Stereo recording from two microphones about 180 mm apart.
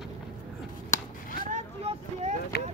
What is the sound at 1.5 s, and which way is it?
Vehicle, 40° right (ahead or behind).